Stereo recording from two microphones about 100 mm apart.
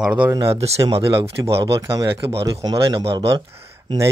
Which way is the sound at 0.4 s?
80° right.